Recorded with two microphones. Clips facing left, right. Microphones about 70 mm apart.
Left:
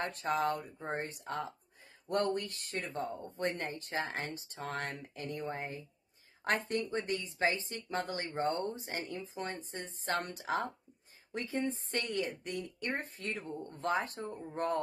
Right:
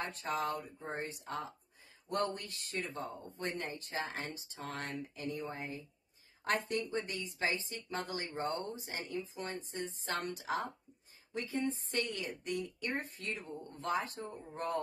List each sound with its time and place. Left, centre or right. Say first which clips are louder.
0.0 s speech: left 4 dB; left